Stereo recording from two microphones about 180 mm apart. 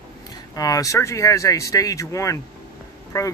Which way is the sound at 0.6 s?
20° left (ahead or behind).